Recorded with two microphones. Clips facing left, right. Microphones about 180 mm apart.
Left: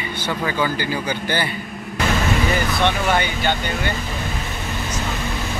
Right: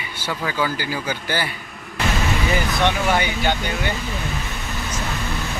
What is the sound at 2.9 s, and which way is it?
Speech, 10° right (ahead or behind).